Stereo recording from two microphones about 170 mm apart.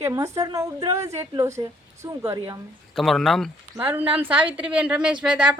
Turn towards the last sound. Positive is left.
turn(degrees=-5)  # may be behind; listen again after turning